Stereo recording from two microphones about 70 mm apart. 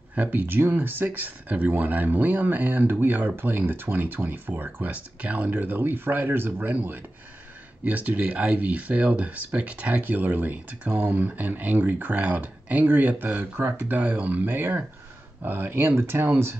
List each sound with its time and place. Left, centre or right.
0.1 s speech: right